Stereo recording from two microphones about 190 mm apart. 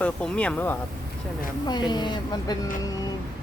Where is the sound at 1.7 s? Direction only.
20° left (ahead or behind).